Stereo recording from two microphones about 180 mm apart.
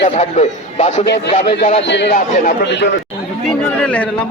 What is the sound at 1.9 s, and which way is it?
A man's voice, 65° left (ahead or behind).